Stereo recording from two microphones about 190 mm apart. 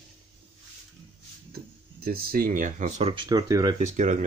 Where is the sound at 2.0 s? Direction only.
50° right (ahead or behind).